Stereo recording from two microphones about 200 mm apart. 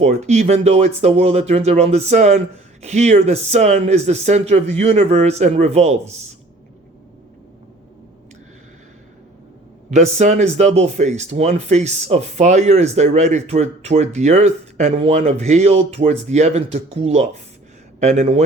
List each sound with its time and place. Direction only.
0.0 s speech: 35° right (ahead or behind)
9.9 s speech: 35° right (ahead or behind)